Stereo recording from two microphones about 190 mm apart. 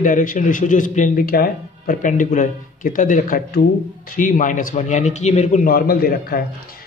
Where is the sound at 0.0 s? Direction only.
45° left (ahead or behind).